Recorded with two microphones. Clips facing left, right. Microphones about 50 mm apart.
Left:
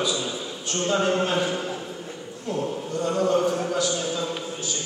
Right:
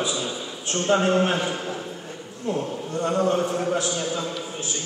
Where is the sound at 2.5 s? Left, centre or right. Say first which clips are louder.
Even; right.